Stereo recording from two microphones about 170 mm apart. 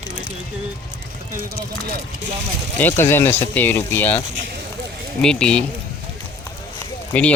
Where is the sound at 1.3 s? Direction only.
60° right (ahead or behind).